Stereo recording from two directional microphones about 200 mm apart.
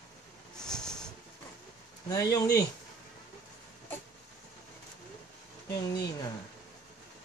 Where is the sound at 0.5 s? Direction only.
5° left (ahead or behind).